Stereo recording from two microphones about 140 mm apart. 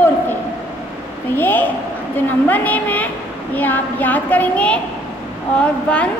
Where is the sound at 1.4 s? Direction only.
15° left (ahead or behind).